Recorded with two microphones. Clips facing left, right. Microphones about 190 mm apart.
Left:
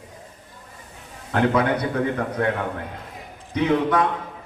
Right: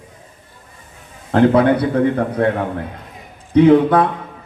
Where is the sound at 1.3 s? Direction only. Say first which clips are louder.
Right 8 dB; 30° right (ahead or behind).